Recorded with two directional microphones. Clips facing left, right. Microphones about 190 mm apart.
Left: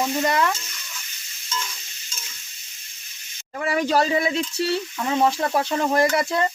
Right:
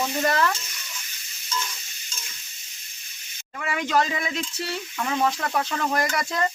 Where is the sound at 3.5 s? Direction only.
35° left (ahead or behind).